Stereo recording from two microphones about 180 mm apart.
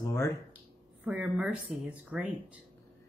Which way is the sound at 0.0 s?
15° left (ahead or behind).